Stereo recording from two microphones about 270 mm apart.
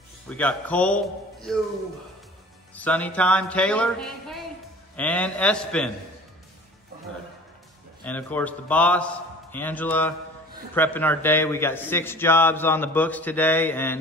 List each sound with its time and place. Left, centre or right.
0.3 s speech: centre
2.7 s speech: centre
8.0 s a man's voice: centre